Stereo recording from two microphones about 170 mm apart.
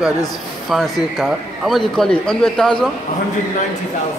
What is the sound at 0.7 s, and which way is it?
A man's voice, centre (ahead or behind).